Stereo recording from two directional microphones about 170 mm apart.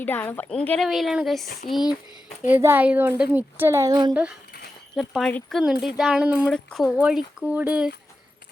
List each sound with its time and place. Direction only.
0.0 s speech: 10° left (ahead or behind)
2.5 s a woman's voice: 10° right (ahead or behind)
4.1 s a woman's voice: 5° right (ahead or behind)